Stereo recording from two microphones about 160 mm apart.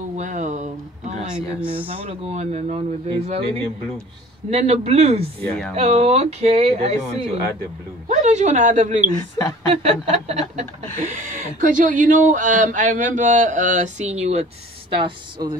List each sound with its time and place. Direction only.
0.1 s a sound: 50° right (ahead or behind)
1.2 s speech: 5° right (ahead or behind)
1.9 s speech: 35° right (ahead or behind)
4.5 s speech: 40° right (ahead or behind)
9.4 s a woman's voice: 20° left (ahead or behind)
9.8 s speech: 45° right (ahead or behind)
14.9 s speech: 30° right (ahead or behind)